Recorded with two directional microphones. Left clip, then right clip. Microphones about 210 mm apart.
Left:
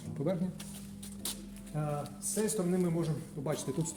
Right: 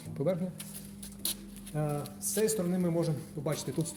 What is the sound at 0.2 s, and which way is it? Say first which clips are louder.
Speech: right 3 dB; 40° right (ahead or behind).